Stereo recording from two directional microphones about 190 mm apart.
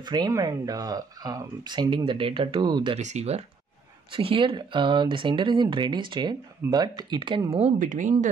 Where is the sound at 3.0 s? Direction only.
35° right (ahead or behind).